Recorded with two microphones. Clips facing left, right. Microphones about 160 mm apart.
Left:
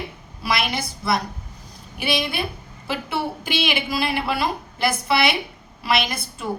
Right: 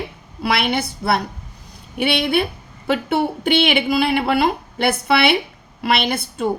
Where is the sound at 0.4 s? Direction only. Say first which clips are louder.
Right 5 dB; 60° right (ahead or behind).